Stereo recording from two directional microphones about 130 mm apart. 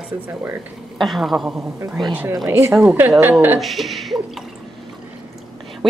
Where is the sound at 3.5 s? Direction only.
Centre (ahead or behind).